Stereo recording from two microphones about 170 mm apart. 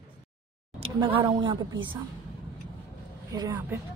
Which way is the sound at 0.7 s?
30° right (ahead or behind).